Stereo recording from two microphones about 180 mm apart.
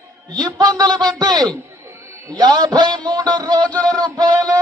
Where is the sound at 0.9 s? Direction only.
5° left (ahead or behind).